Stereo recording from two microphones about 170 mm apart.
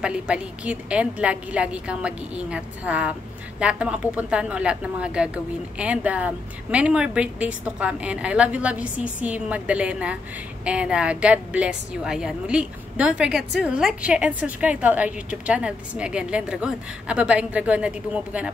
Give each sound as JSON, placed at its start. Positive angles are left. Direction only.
{"t": 0.0, "sound": "a woman's voice", "side_deg": -5}